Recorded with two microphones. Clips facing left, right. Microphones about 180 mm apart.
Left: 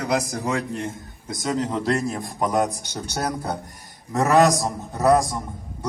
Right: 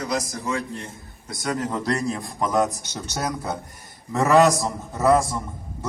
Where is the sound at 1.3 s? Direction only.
20° left (ahead or behind).